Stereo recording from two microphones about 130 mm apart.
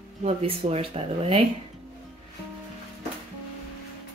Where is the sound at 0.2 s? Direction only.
50° right (ahead or behind).